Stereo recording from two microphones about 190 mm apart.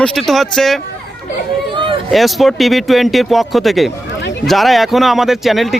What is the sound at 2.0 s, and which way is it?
Speech, centre (ahead or behind).